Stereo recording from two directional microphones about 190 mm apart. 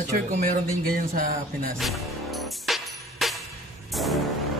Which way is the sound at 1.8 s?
Centre (ahead or behind).